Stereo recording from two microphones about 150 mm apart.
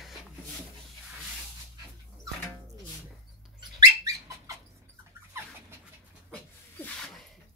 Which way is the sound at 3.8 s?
20° right (ahead or behind).